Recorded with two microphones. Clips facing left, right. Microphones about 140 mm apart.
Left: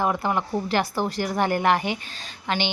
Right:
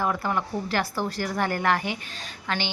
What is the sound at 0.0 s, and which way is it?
Speech, 20° left (ahead or behind).